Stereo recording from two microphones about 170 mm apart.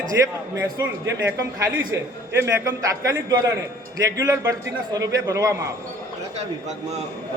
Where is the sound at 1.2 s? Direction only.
20° right (ahead or behind).